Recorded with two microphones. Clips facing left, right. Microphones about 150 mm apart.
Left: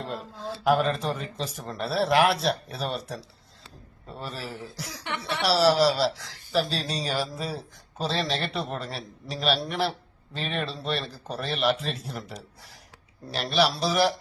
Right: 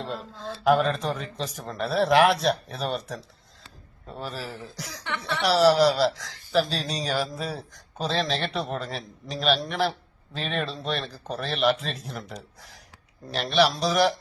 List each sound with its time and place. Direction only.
0.0 s speech: 5° left (ahead or behind)
5.0 s chuckle: 15° left (ahead or behind)
5.4 s speech: centre (ahead or behind)